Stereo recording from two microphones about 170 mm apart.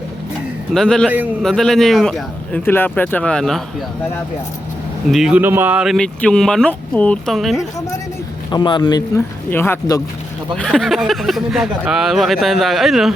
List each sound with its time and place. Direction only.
0.7 s speech: 5° left (ahead or behind)
5.0 s speech: centre (ahead or behind)
8.4 s speech: 25° left (ahead or behind)
10.6 s speech: centre (ahead or behind)